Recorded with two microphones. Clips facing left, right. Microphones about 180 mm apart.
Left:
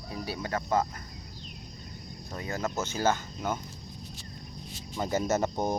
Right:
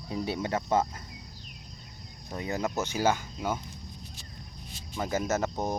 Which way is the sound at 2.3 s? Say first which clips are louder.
Right 2 dB; 15° right (ahead or behind).